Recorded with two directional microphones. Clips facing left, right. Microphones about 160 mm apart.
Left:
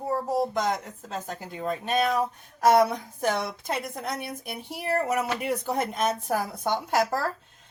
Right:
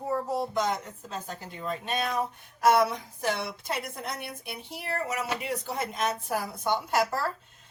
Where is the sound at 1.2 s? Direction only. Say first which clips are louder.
Left 5 dB; 45° left (ahead or behind).